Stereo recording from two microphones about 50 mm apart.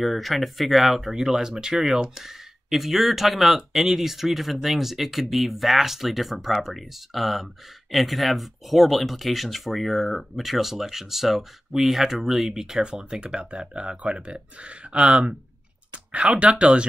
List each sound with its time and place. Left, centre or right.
0.0 s speech: centre
12.8 s speech: centre